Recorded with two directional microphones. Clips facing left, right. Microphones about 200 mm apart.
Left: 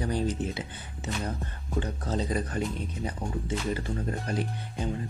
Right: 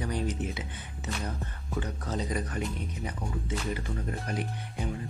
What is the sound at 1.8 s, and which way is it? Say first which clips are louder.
Speech: left 3 dB; 30° left (ahead or behind).